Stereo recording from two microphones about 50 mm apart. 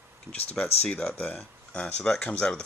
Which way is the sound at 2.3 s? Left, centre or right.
Left.